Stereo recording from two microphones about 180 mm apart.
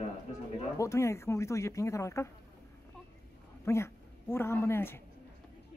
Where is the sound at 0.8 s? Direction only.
15° left (ahead or behind).